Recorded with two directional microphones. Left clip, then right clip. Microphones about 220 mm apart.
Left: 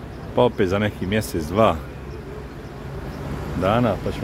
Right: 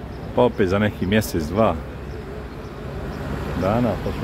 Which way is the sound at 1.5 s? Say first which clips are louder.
Left 2 dB; 20° left (ahead or behind).